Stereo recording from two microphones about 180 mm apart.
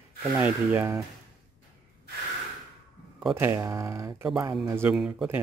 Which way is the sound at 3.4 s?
15° right (ahead or behind).